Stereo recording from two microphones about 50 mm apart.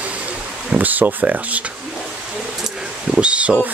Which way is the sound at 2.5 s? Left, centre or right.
Centre.